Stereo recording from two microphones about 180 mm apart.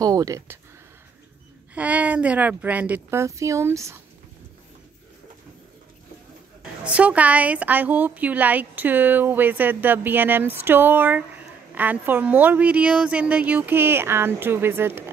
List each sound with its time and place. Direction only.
0.0 s a woman's voice: 20° right (ahead or behind)
1.8 s a woman's voice: 5° right (ahead or behind)
6.8 s a woman's voice: 5° right (ahead or behind)